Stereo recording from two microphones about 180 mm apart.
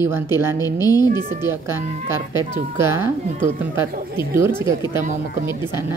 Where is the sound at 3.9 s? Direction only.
55° right (ahead or behind).